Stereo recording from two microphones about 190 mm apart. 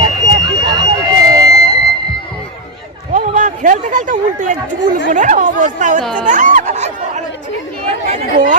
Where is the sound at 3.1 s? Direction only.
40° right (ahead or behind).